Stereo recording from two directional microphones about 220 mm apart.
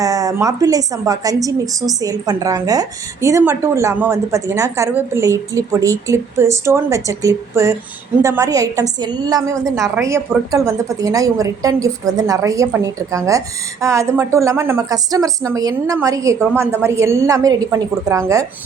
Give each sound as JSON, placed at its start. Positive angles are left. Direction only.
{"t": 0.0, "sound": "a woman's voice", "side_deg": -15}